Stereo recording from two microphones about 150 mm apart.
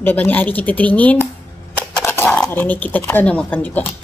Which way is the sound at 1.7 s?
10° left (ahead or behind).